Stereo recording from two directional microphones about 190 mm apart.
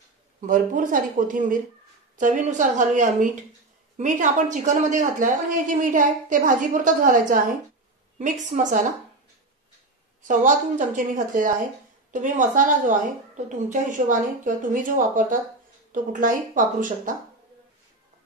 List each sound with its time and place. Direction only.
0.4 s a woman's voice: 45° right (ahead or behind)
10.2 s a woman's voice: 40° right (ahead or behind)